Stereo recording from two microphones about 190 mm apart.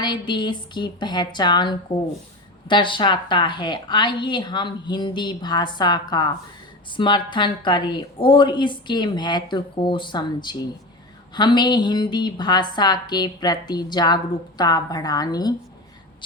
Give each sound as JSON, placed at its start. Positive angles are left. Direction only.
{"t": 0.0, "sound": "a woman's voice", "side_deg": 25}